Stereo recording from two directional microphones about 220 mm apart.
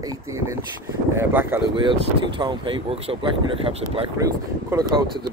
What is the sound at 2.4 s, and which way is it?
Speech, 20° right (ahead or behind).